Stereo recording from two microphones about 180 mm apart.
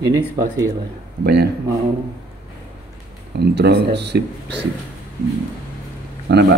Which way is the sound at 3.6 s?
65° right (ahead or behind).